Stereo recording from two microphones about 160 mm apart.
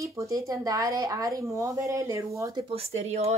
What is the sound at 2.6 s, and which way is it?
Speech, 40° right (ahead or behind).